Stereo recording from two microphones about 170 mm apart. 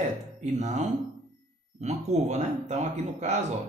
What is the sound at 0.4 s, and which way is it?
Speech, 45° right (ahead or behind).